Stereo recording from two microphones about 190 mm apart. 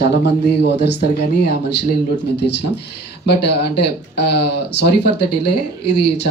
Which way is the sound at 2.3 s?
65° left (ahead or behind).